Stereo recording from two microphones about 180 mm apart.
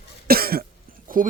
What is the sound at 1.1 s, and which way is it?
Speech, 50° right (ahead or behind).